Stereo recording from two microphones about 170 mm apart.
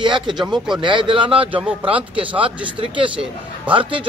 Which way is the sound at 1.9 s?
30° right (ahead or behind).